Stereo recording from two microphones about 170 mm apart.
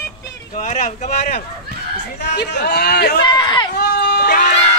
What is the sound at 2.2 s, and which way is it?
A man's voice, 80° left.